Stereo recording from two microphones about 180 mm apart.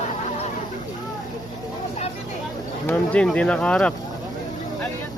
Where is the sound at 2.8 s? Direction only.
5° left (ahead or behind).